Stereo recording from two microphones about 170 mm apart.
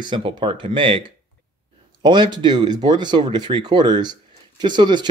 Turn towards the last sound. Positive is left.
turn(degrees=-25)  # may be behind; listen again after turning